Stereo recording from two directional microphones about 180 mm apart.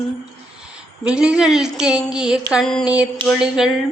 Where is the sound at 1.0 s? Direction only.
5° right (ahead or behind).